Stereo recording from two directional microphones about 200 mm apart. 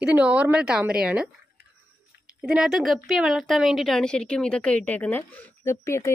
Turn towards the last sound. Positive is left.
turn(degrees=15)  # may be behind; listen again after turning